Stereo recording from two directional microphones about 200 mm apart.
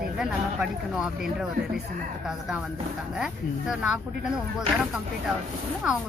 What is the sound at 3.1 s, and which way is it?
Speech, 5° right (ahead or behind).